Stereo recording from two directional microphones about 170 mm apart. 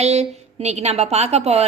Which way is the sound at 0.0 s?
40° right (ahead or behind).